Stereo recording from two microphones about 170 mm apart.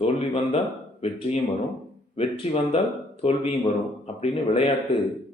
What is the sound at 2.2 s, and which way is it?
Speech, 35° left (ahead or behind).